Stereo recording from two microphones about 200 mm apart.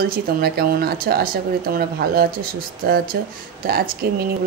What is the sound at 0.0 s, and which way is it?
Speech, 50° right (ahead or behind).